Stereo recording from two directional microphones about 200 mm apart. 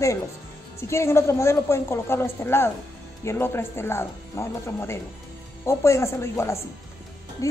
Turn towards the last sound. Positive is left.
turn(degrees=15)  # may be behind; listen again after turning